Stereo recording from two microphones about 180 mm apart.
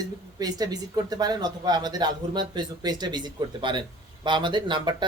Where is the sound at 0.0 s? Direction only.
20° right (ahead or behind).